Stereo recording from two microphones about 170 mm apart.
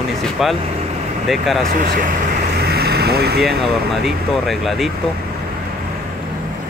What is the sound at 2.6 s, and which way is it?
Vehicle, 70° right (ahead or behind).